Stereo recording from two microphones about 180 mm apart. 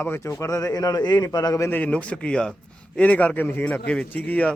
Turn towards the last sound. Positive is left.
turn(degrees=10)  # may be behind; listen again after turning